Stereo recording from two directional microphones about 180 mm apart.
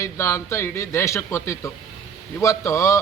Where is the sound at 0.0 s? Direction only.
15° left (ahead or behind).